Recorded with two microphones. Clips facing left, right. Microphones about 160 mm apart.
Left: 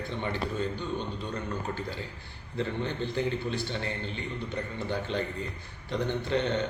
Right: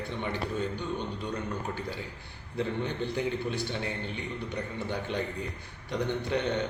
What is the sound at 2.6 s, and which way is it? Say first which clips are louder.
A man's voice: even; 10° right (ahead or behind).